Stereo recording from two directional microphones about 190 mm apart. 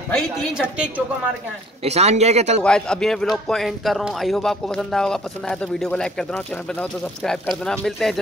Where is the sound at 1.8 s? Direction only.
35° right (ahead or behind).